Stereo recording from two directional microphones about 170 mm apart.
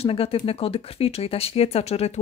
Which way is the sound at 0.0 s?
35° left (ahead or behind).